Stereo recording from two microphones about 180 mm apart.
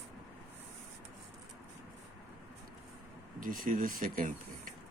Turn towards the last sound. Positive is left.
turn(degrees=-50)  # may be behind; listen again after turning